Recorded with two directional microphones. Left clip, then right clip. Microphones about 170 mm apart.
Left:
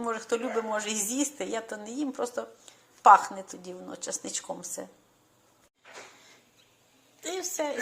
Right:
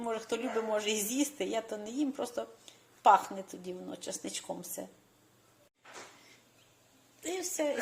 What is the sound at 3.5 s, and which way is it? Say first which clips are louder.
Dishes: left 1 dB; 5° right (ahead or behind).